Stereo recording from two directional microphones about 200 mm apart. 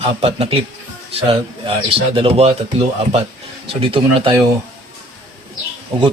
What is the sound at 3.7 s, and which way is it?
Speech, 25° right (ahead or behind).